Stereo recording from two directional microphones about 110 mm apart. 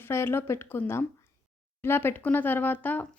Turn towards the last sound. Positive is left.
turn(degrees=15)  # may be behind; listen again after turning